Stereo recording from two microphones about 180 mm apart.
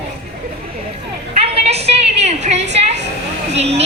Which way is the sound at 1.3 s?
35° right (ahead or behind).